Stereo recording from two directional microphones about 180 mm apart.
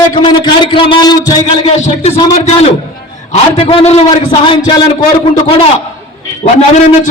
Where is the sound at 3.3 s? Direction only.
30° left (ahead or behind).